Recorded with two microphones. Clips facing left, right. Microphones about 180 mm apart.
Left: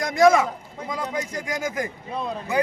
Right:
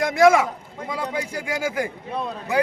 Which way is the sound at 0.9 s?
5° right (ahead or behind).